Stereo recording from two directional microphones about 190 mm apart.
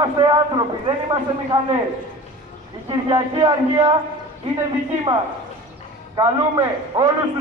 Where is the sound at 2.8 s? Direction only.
25° right (ahead or behind).